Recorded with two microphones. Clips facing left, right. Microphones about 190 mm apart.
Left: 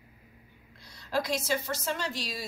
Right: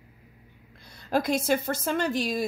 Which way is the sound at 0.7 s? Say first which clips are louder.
Right 4 dB; 55° right (ahead or behind).